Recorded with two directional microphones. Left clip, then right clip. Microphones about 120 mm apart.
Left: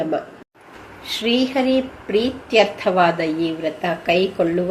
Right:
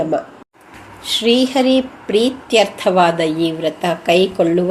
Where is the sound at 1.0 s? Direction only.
40° right (ahead or behind).